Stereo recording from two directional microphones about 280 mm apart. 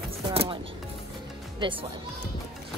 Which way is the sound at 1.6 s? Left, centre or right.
Centre.